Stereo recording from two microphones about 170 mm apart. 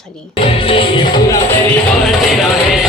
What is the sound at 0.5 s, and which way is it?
Music, 30° left (ahead or behind).